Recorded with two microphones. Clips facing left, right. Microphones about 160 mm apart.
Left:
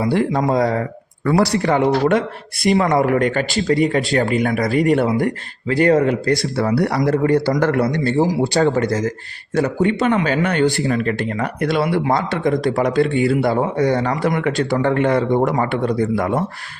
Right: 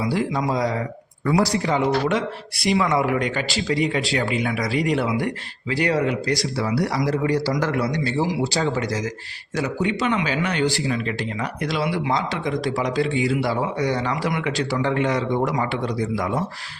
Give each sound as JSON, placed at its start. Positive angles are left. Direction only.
{"t": 0.0, "sound": "speech", "side_deg": 55}